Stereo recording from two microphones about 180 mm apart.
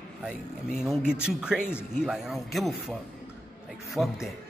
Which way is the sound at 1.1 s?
5° right (ahead or behind).